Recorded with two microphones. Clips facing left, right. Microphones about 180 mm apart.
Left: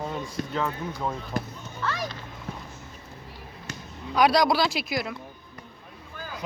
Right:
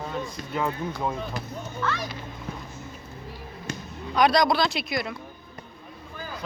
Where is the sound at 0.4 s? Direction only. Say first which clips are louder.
Even; 55° left (ahead or behind).